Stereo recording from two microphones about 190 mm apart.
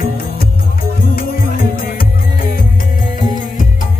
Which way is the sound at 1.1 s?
50° left (ahead or behind).